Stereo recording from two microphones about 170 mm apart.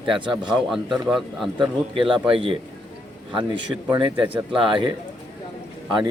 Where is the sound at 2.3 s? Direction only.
30° right (ahead or behind).